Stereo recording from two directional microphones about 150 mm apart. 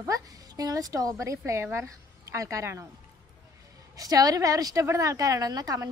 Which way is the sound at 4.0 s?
25° right (ahead or behind).